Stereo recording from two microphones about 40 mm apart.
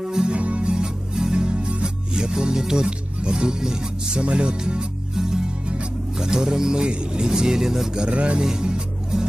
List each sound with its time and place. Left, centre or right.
0.0 s music: centre
0.3 s music: right
5.1 s music: centre
6.1 s speech: centre
8.0 s music: right
8.4 s speech: centre